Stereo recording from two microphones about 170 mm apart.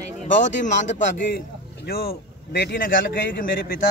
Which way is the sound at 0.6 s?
45° left (ahead or behind).